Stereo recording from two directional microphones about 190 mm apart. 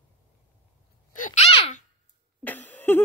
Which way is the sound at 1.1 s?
45° left (ahead or behind).